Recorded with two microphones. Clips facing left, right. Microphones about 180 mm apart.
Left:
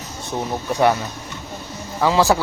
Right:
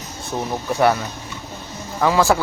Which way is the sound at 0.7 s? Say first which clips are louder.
Even; 20° left (ahead or behind).